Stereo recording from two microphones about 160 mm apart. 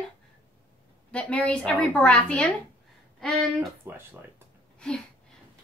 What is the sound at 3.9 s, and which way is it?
Speech, 15° right (ahead or behind).